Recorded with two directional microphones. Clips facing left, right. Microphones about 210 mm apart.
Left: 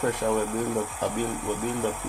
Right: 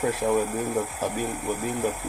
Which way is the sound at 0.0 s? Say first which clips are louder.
Right 1 dB; 5° right (ahead or behind).